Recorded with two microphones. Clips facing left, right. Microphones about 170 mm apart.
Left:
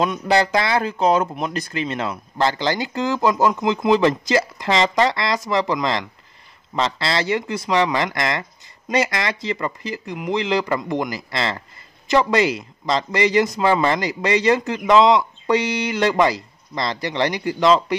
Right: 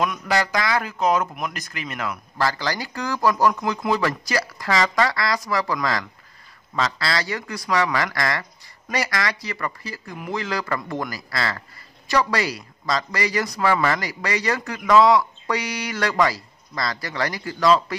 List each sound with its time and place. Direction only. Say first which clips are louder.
0.0 s speech: left 4 dB; 30° left (ahead or behind)